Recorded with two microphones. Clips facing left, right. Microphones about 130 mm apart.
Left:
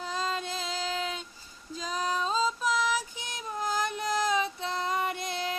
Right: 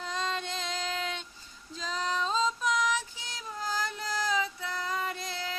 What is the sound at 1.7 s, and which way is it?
Child singing, 10° left (ahead or behind).